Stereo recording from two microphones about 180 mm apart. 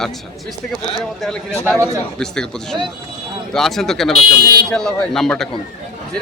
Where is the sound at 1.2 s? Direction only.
5° left (ahead or behind).